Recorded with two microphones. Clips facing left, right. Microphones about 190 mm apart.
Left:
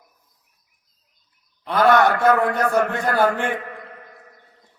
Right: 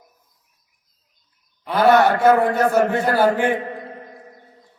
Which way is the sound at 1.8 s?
25° right (ahead or behind).